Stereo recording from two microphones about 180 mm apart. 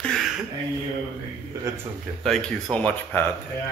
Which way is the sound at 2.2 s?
5° left (ahead or behind).